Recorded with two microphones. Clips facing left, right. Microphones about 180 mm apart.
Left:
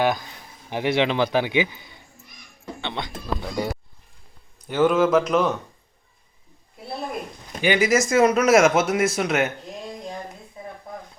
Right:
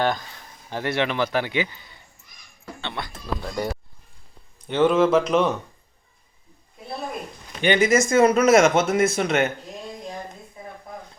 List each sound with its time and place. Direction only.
0.0 s a man's voice: 10° left (ahead or behind)
2.6 s music: 20° left (ahead or behind)
3.4 s a man's voice: 15° left (ahead or behind)
4.7 s speech: centre (ahead or behind)
7.6 s speech: 5° left (ahead or behind)